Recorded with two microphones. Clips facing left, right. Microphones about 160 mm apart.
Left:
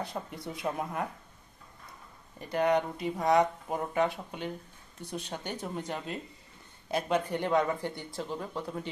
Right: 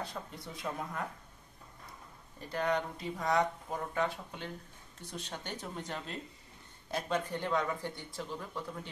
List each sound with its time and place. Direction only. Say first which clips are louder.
0.3 s speech: left 5 dB; 15° left (ahead or behind)
2.5 s speech: left 6 dB; 15° left (ahead or behind)